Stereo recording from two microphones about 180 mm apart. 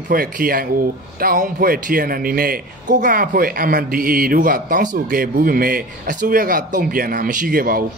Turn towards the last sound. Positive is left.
turn(degrees=-55)  # may be behind; listen again after turning